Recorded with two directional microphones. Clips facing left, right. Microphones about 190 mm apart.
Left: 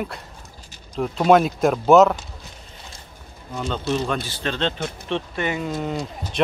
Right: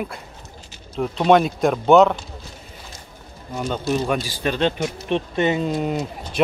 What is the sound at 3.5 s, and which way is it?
Speech, 10° right (ahead or behind).